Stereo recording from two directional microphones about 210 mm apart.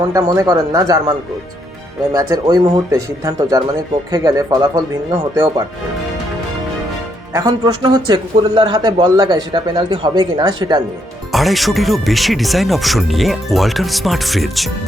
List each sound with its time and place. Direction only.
0.1 s speech: 15° right (ahead or behind)
2.1 s speech: 20° right (ahead or behind)
7.3 s a man's voice: 20° right (ahead or behind)
11.3 s speech: centre (ahead or behind)